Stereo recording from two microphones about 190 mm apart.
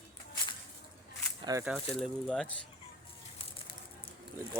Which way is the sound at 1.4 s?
15° right (ahead or behind).